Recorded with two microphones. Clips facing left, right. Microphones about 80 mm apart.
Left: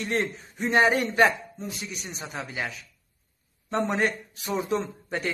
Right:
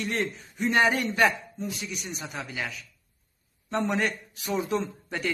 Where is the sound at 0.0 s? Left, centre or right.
Left.